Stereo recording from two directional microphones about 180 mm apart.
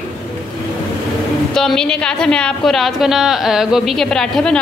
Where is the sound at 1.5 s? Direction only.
5° left (ahead or behind).